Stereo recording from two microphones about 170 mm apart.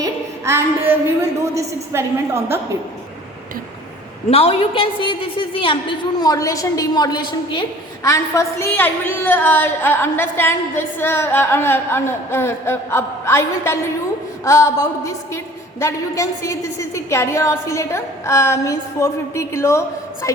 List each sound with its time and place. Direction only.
0.0 s a sound: 15° right (ahead or behind)
1.5 s a woman's voice: 15° right (ahead or behind)
4.3 s a woman's voice: 35° left (ahead or behind); by 20.4 s 20° left (ahead or behind)